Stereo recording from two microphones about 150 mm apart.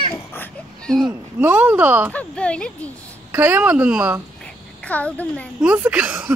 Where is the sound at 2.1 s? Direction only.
10° left (ahead or behind).